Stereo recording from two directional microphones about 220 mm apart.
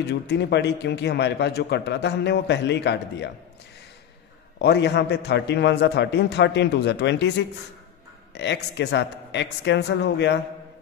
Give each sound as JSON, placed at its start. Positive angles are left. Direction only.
{"t": 0.0, "sound": "a man's voice", "side_deg": 50}
{"t": 4.6, "sound": "a man's voice", "side_deg": 50}